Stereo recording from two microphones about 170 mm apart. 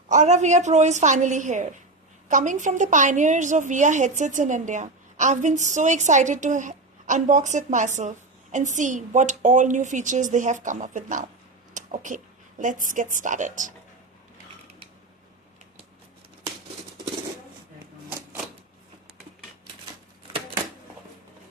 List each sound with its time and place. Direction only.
0.1 s a woman's voice: 45° right (ahead or behind)